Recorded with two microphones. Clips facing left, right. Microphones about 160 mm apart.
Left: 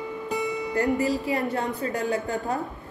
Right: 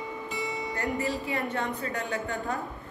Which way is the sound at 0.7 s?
40° left (ahead or behind).